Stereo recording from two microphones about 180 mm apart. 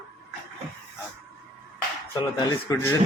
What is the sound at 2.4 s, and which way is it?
Speech, 20° left (ahead or behind).